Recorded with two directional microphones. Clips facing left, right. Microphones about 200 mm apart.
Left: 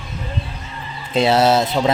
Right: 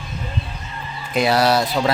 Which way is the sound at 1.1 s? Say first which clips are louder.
Left 2 dB; 25° left (ahead or behind).